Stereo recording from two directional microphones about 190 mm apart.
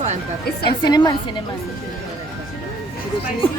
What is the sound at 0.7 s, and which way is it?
Speech, 20° left (ahead or behind).